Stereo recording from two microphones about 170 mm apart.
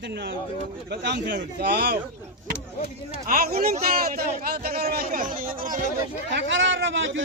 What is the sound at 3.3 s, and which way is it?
Speech, 60° right (ahead or behind).